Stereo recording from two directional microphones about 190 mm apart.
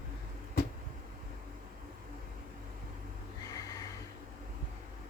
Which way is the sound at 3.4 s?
20° left (ahead or behind).